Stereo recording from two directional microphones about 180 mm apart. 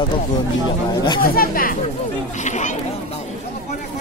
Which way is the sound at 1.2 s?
55° left (ahead or behind).